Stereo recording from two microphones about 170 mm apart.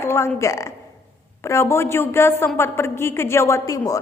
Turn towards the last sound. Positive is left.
turn(degrees=20)  # may be behind; listen again after turning